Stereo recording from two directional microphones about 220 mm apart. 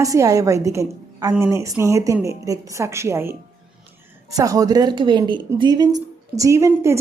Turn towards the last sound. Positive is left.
turn(degrees=-10)  # may be behind; listen again after turning